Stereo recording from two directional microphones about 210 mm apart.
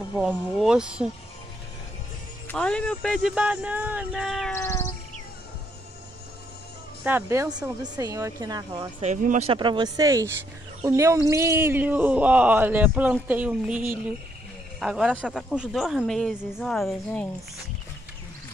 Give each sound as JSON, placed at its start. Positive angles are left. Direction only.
{"t": 0.2, "sound": "speech", "side_deg": 0}
{"t": 2.4, "sound": "speech", "side_deg": 5}
{"t": 4.6, "sound": "a sound", "side_deg": 15}
{"t": 7.1, "sound": "speech", "side_deg": -10}
{"t": 9.0, "sound": "speech", "side_deg": -35}